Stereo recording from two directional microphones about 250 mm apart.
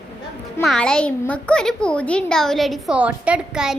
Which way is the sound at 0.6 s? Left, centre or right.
Centre.